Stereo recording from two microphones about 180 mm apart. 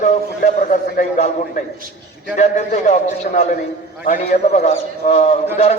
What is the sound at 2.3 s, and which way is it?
Speech, 40° left (ahead or behind).